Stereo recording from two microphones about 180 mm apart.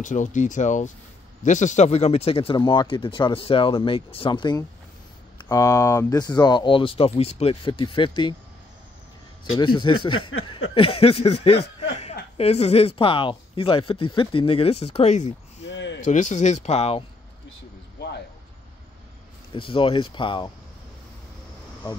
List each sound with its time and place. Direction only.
0.0 s speech: 45° left (ahead or behind); by 8.4 s 25° left (ahead or behind)
9.4 s speech: 25° left (ahead or behind)
15.6 s a sound: 85° left
16.1 s speech: 45° left (ahead or behind)
19.5 s speech: 30° left (ahead or behind)